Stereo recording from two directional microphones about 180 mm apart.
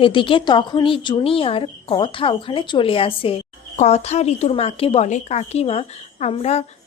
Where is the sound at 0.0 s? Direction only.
30° left (ahead or behind).